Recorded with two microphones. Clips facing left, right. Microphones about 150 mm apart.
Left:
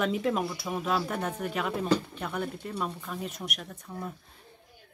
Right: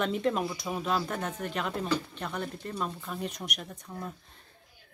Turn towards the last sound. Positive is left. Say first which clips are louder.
# left 1 dB
turn(degrees=0)  # may be behind; listen again after turning